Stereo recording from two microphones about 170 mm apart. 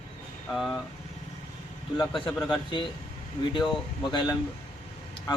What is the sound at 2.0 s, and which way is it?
Speech, 25° left (ahead or behind).